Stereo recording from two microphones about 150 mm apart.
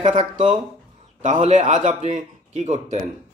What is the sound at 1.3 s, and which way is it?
A man's voice, 45° right (ahead or behind).